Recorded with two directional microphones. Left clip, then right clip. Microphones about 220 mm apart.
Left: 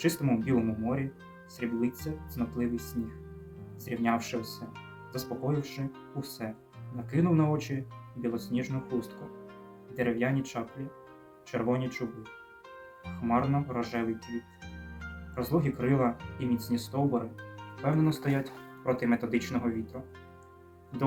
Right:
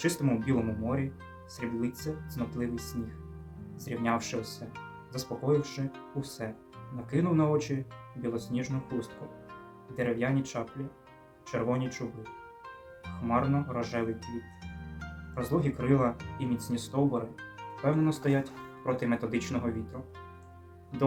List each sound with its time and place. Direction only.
0.0 s speech: centre (ahead or behind)
3.8 s speech: centre (ahead or behind)
13.2 s speech: 5° left (ahead or behind)
15.4 s speech: 5° left (ahead or behind)